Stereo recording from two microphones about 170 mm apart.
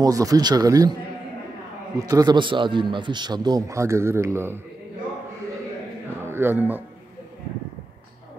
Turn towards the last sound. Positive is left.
turn(degrees=-10)  # may be behind; listen again after turning